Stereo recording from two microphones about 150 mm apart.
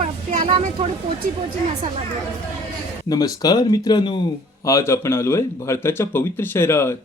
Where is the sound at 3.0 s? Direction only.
25° left (ahead or behind).